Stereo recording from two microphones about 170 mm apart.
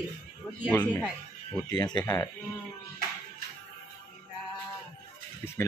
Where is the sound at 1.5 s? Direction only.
20° left (ahead or behind).